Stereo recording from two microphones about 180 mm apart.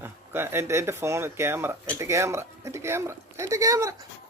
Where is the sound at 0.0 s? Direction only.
15° right (ahead or behind).